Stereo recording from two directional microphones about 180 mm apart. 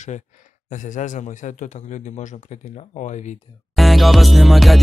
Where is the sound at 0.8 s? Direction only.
45° left (ahead or behind).